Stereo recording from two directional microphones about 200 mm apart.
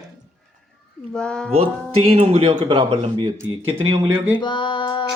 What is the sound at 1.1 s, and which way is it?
Speech, 5° left (ahead or behind).